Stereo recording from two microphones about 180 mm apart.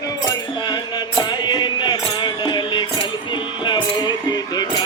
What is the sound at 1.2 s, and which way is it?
Music, 25° left (ahead or behind).